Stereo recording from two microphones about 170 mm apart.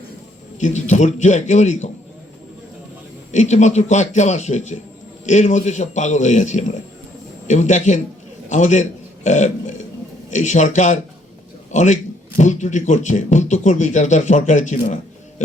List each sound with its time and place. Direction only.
0.6 s speech: 45° left (ahead or behind)
3.3 s a man's voice: 45° left (ahead or behind)